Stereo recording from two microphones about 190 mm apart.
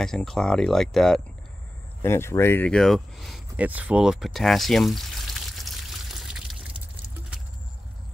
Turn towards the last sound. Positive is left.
turn(degrees=0)  # may be behind; listen again after turning